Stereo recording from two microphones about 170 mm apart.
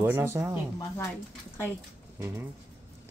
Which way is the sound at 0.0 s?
15° right (ahead or behind).